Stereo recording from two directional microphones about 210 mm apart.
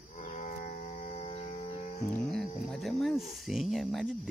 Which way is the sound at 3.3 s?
Centre (ahead or behind).